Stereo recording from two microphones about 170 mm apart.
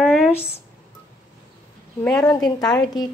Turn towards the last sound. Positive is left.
turn(degrees=20)  # may be behind; listen again after turning